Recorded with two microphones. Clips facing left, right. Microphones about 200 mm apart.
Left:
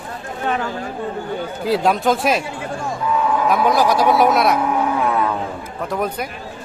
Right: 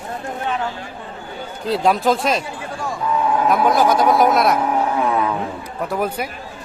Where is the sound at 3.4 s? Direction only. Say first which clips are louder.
Right 1 dB; centre (ahead or behind).